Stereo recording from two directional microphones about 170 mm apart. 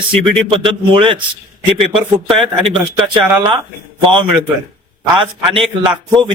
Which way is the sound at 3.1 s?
30° right (ahead or behind).